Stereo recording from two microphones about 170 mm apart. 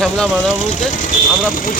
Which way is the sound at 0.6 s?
50° left (ahead or behind).